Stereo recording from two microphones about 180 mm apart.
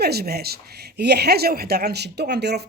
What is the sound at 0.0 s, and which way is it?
Speech, 60° right (ahead or behind).